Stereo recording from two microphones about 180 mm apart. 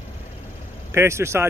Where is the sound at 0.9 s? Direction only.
15° right (ahead or behind).